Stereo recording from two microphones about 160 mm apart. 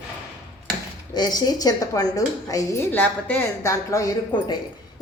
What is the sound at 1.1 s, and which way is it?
A woman's voice, 25° left (ahead or behind).